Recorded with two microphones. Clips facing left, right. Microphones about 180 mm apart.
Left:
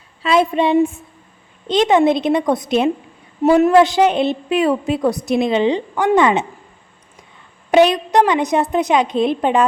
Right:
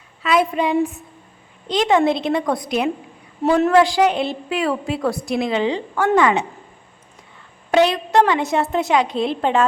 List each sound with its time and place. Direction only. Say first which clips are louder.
0.2 s a woman's voice: left 3 dB; 25° left (ahead or behind)
7.7 s a woman's voice: left 3 dB; 20° left (ahead or behind)